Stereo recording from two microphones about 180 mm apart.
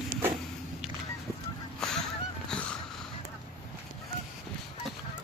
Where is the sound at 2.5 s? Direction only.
5° left (ahead or behind).